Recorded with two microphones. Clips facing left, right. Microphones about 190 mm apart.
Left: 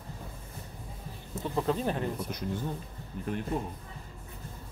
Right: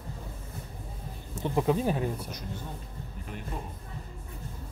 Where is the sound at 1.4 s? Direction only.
10° right (ahead or behind).